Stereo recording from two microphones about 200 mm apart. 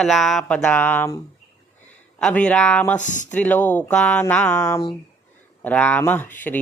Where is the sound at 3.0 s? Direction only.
40° left (ahead or behind).